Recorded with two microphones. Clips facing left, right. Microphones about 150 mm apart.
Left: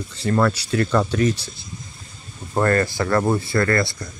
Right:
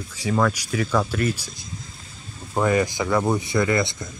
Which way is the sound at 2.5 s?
10° right (ahead or behind).